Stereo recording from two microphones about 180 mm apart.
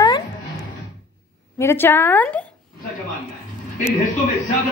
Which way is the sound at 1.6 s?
15° left (ahead or behind).